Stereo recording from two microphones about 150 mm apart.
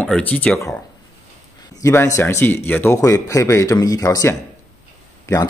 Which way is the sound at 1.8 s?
20° left (ahead or behind).